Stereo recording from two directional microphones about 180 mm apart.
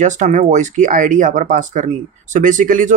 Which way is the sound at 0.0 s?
40° right (ahead or behind).